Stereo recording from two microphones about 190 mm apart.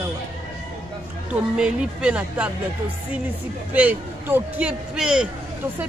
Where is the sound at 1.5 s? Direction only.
5° right (ahead or behind).